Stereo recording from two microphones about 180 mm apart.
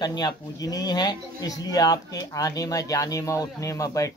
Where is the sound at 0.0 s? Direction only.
20° left (ahead or behind).